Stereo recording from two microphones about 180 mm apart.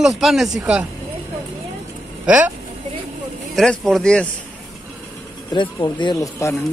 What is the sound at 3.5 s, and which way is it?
Speech, 5° left (ahead or behind).